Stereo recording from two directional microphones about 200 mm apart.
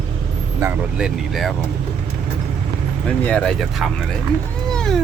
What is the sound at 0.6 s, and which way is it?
Vehicle, 5° right (ahead or behind).